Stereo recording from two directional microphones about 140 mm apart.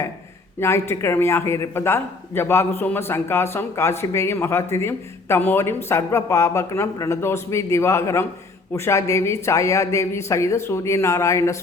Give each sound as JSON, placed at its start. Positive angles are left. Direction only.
{"t": 0.6, "sound": "a man's voice", "side_deg": 20}